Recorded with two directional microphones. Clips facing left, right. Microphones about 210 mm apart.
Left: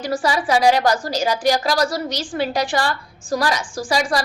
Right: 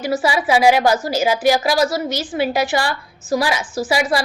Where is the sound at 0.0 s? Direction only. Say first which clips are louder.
Right 2 dB; 5° right (ahead or behind).